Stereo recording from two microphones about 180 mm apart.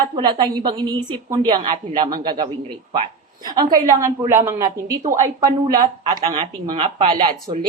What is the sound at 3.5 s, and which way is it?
A woman's voice, 20° right (ahead or behind).